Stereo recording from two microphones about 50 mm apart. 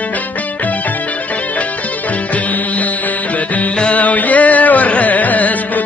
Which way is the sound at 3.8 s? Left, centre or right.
Left.